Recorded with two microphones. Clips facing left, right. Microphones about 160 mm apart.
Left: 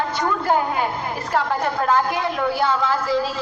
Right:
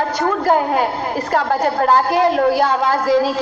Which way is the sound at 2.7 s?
45° right (ahead or behind).